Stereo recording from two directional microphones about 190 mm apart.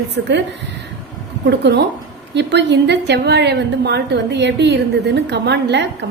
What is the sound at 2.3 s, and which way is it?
A woman's voice, 65° right (ahead or behind).